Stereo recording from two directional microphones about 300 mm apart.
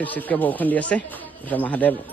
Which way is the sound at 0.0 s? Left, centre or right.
Centre.